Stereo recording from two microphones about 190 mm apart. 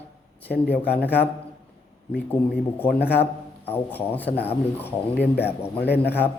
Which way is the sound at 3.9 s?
10° left (ahead or behind).